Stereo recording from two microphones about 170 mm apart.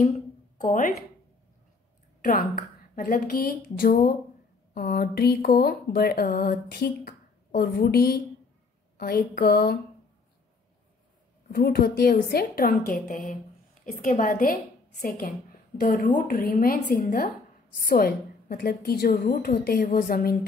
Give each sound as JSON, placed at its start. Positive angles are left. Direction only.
{"t": 0.6, "sound": "a woman's voice", "side_deg": 50}
{"t": 2.2, "sound": "speech", "side_deg": 55}
{"t": 11.5, "sound": "a woman's voice", "side_deg": 60}